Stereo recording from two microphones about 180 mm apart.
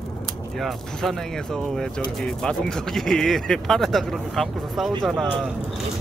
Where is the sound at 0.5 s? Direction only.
Centre (ahead or behind).